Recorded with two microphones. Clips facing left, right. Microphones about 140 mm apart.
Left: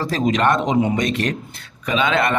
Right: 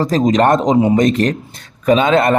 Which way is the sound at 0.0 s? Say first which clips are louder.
Right 6 dB; 40° right (ahead or behind).